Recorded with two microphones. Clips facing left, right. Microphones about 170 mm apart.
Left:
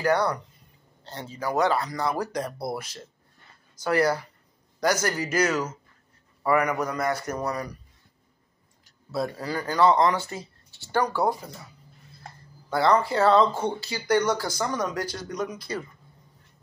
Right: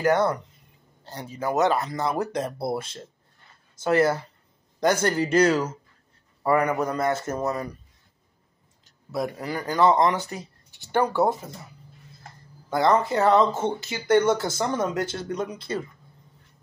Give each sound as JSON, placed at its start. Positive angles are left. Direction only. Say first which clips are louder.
{"t": 0.0, "sound": "a man's voice", "louder": "right 2 dB", "side_deg": -20}
{"t": 8.8, "sound": "speech", "louder": "even", "side_deg": -15}
{"t": 12.6, "sound": "speech", "louder": "right 1 dB", "side_deg": -20}